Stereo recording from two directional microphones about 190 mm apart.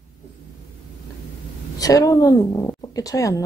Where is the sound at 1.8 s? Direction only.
20° left (ahead or behind).